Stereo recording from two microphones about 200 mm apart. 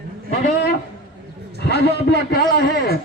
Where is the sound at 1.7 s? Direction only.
55° left (ahead or behind).